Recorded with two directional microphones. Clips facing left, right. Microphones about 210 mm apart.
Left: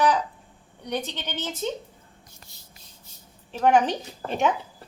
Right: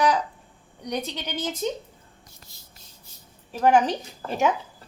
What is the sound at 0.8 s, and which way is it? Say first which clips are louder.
Speech: even; 15° right (ahead or behind).